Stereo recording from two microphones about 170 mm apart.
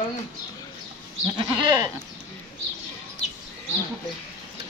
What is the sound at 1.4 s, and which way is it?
Goat, 25° right (ahead or behind).